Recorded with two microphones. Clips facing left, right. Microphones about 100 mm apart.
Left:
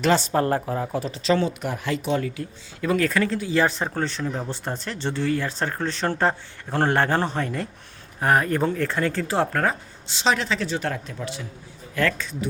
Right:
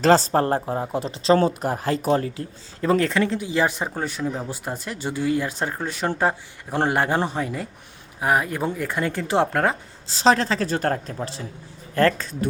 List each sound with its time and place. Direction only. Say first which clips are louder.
0.0 s a woman's voice: right 3 dB; 35° right (ahead or behind); by 9.7 s 20° right (ahead or behind)
10.1 s a woman's voice: right 4 dB; 35° right (ahead or behind)